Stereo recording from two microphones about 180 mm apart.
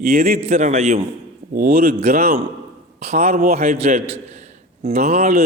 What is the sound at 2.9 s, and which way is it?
A man's voice, 35° right (ahead or behind).